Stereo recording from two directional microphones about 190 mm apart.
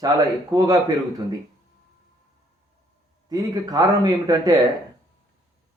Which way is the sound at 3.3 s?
20° right (ahead or behind).